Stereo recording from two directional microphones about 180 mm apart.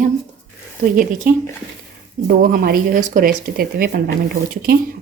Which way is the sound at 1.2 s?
50° right (ahead or behind).